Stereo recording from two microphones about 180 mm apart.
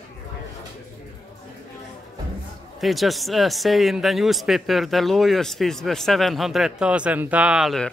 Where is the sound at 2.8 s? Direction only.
Centre (ahead or behind).